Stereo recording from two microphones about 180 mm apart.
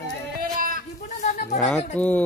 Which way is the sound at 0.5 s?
50° right (ahead or behind).